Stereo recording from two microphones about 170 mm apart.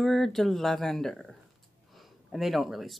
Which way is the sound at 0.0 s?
Centre (ahead or behind).